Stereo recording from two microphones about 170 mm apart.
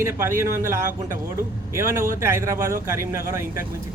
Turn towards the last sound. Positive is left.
turn(degrees=-15)  # may be behind; listen again after turning